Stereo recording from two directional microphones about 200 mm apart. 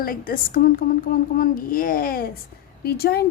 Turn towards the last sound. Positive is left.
turn(degrees=50)  # may be behind; listen again after turning